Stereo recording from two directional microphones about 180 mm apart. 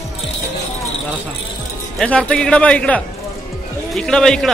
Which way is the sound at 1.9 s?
5° left (ahead or behind).